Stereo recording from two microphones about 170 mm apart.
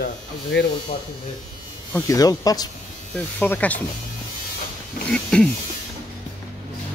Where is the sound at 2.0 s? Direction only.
20° left (ahead or behind).